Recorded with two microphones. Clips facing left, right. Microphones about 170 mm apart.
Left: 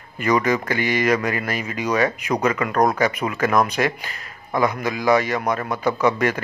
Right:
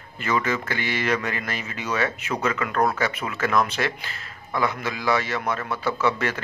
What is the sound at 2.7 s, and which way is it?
Speech, 40° left (ahead or behind).